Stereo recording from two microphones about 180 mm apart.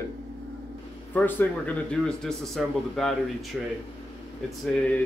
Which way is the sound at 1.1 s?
10° left (ahead or behind).